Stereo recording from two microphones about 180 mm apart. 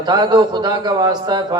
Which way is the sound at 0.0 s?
25° right (ahead or behind).